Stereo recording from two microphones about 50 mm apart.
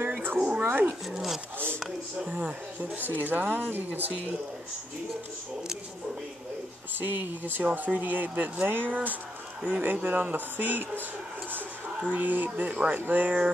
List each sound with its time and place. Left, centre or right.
0.0 s dog: right
0.6 s speech: right
2.1 s speech: right
2.8 s speech: right
7.0 s speech: right
7.6 s speech: right